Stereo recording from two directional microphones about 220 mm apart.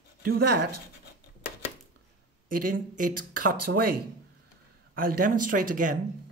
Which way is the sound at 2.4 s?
40° right (ahead or behind).